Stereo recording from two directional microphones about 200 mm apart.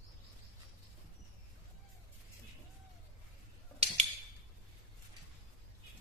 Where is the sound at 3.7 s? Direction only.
30° right (ahead or behind).